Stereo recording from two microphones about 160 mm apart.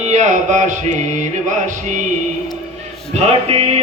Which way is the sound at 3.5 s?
40° right (ahead or behind).